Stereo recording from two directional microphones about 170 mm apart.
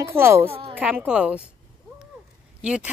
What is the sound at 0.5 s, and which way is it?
Speech, 35° right (ahead or behind).